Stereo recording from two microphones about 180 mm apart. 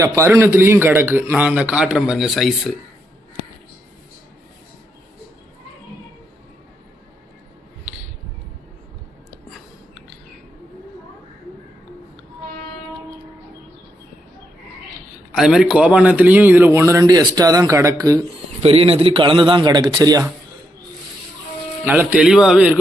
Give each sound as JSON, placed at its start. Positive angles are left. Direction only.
{"t": 0.0, "sound": "speech", "side_deg": -15}
{"t": 15.4, "sound": "speech", "side_deg": -5}
{"t": 18.6, "sound": "a man's voice", "side_deg": -35}
{"t": 21.8, "sound": "speech", "side_deg": -10}